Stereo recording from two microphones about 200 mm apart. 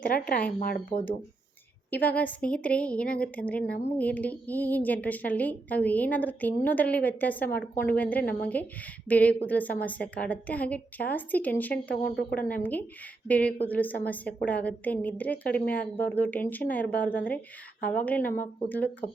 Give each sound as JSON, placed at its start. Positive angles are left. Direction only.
{"t": 0.9, "sound": "speech", "side_deg": 30}
{"t": 1.9, "sound": "a woman's voice", "side_deg": 10}
{"t": 12.0, "sound": "a woman's voice", "side_deg": 45}
{"t": 13.2, "sound": "a woman's voice", "side_deg": 5}